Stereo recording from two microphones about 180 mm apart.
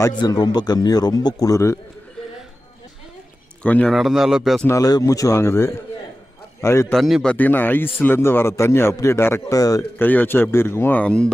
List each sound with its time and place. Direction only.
0.0 s speech: 25° left (ahead or behind)
3.6 s speech: 5° left (ahead or behind)
4.6 s a man's voice: 20° left (ahead or behind)
6.9 s a man's voice: centre (ahead or behind)